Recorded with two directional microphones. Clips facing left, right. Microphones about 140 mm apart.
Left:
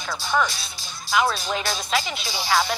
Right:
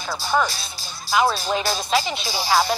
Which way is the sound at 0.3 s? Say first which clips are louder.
Right 2 dB; 35° right (ahead or behind).